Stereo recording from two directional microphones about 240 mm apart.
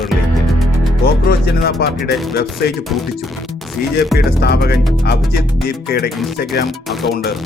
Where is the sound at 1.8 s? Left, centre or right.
Left.